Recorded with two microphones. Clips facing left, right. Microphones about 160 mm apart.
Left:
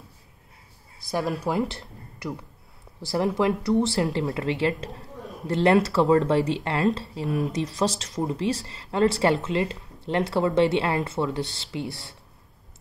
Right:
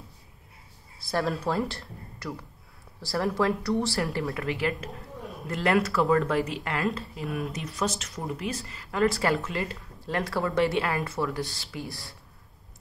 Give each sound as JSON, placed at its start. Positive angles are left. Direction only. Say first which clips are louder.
{"t": 1.1, "sound": "speech", "louder": "left 2 dB", "side_deg": 15}